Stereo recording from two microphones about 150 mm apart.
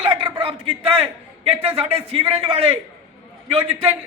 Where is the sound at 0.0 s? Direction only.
35° right (ahead or behind).